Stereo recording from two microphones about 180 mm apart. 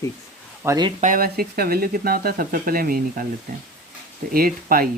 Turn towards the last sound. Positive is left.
turn(degrees=-55)  # may be behind; listen again after turning